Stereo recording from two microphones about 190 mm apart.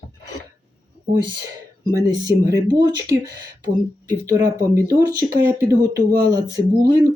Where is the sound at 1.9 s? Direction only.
20° right (ahead or behind).